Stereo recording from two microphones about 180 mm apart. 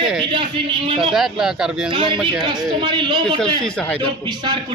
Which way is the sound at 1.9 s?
30° right (ahead or behind).